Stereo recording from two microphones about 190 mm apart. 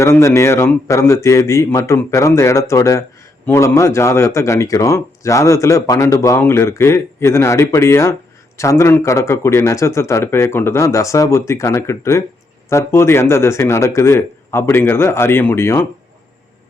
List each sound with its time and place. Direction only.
0.0 s speech: 15° left (ahead or behind)